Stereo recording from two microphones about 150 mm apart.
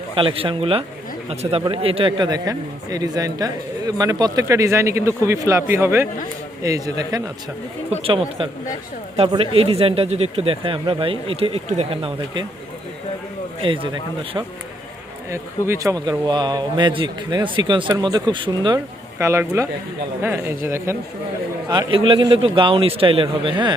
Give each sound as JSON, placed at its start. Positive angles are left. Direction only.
{"t": 0.2, "sound": "speech", "side_deg": -35}
{"t": 8.0, "sound": "speech", "side_deg": -35}
{"t": 13.6, "sound": "speech", "side_deg": -35}
{"t": 15.3, "sound": "speech", "side_deg": -20}
{"t": 19.2, "sound": "speech", "side_deg": -20}
{"t": 21.7, "sound": "speech", "side_deg": -30}